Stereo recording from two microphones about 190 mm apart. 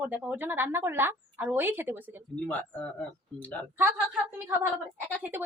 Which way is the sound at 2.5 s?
10° left (ahead or behind).